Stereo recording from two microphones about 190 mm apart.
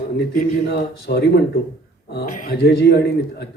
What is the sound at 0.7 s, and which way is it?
A man's voice, 55° left (ahead or behind).